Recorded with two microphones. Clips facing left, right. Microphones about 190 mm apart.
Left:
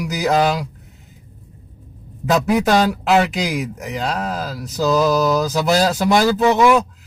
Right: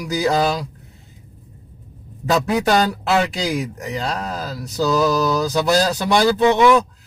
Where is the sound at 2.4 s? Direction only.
5° left (ahead or behind).